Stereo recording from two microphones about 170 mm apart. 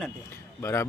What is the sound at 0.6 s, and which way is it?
Speech, 15° left (ahead or behind).